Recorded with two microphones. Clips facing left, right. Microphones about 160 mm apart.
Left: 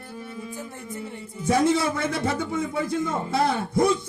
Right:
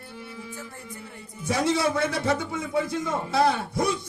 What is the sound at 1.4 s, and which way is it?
A man's voice, 55° left (ahead or behind).